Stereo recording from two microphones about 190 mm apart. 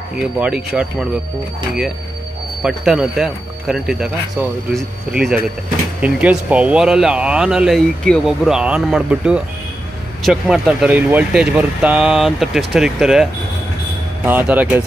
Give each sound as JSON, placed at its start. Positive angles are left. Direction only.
{"t": 0.4, "sound": "speech", "side_deg": -5}
{"t": 2.6, "sound": "speech", "side_deg": -5}